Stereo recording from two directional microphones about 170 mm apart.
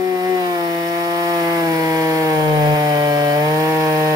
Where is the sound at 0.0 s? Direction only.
20° right (ahead or behind).